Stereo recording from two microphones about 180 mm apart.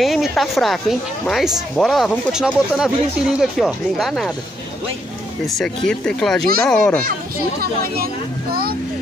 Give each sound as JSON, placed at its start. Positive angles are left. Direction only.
{"t": 0.0, "sound": "speech", "side_deg": 0}
{"t": 5.5, "sound": "speech", "side_deg": 5}
{"t": 7.6, "sound": "speech", "side_deg": -55}